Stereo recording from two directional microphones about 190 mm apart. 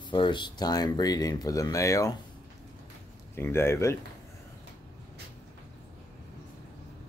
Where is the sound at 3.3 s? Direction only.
15° left (ahead or behind).